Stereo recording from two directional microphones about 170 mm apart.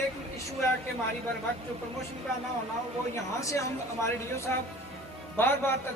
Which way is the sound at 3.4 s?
20° left (ahead or behind).